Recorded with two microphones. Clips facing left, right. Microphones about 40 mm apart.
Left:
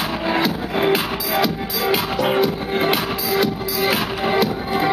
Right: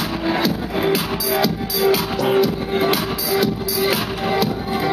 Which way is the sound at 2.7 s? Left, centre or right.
Centre.